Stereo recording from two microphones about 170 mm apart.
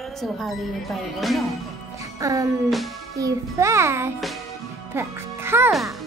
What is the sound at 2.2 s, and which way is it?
Music, 20° right (ahead or behind).